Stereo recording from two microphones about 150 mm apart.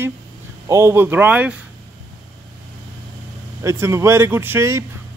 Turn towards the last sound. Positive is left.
turn(degrees=-20)  # may be behind; listen again after turning